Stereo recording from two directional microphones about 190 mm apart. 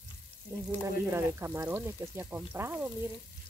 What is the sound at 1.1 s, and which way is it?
Speech, 15° right (ahead or behind).